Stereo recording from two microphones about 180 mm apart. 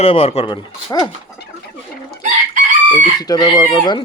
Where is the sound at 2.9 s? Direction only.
20° left (ahead or behind).